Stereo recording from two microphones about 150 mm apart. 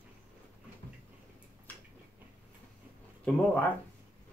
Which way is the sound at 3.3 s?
10° left (ahead or behind).